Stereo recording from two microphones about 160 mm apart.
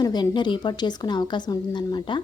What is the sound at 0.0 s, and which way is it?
Speech, 25° left (ahead or behind).